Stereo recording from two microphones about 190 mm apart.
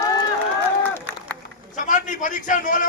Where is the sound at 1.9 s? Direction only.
40° left (ahead or behind).